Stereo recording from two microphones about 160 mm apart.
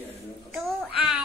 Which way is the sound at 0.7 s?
Centre (ahead or behind).